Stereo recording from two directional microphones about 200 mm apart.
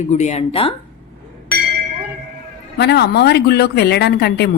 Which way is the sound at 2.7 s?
55° left (ahead or behind).